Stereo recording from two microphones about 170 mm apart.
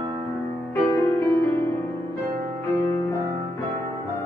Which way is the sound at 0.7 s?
15° left (ahead or behind).